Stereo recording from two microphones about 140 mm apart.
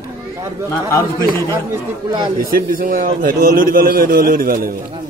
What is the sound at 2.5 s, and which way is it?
A man's voice, 80° right.